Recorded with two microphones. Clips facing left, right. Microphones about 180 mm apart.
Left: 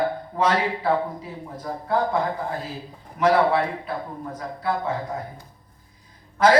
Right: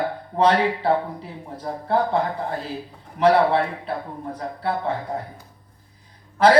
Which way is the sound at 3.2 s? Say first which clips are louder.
Right 2 dB; 35° right (ahead or behind).